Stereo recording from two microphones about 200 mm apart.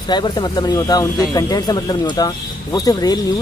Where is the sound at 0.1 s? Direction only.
20° left (ahead or behind).